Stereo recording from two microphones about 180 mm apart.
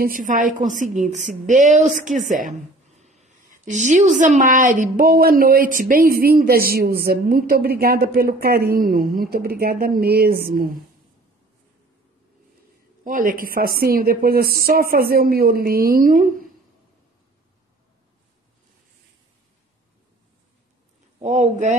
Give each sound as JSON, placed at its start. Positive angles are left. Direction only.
{"t": 0.0, "sound": "a woman's voice", "side_deg": -50}
{"t": 13.0, "sound": "a woman's voice", "side_deg": -50}
{"t": 21.2, "sound": "a sound", "side_deg": -40}